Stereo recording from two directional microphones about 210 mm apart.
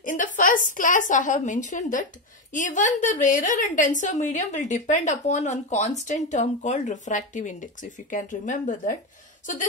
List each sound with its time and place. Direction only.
0.0 s a woman's voice: 40° left (ahead or behind)